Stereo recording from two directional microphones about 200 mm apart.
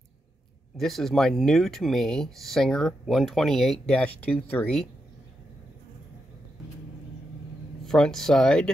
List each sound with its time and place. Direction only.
0.7 s speech: centre (ahead or behind)
7.8 s speech: centre (ahead or behind)